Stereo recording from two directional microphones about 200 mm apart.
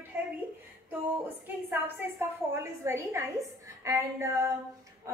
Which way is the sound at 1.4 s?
10° right (ahead or behind).